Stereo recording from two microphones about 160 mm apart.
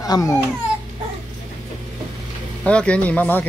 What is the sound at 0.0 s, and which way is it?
Speech, 20° left (ahead or behind).